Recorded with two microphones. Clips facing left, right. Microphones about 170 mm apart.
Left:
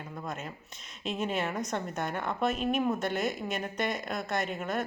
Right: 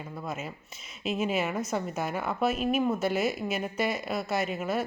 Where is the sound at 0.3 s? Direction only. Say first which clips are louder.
Right 3 dB; 5° right (ahead or behind).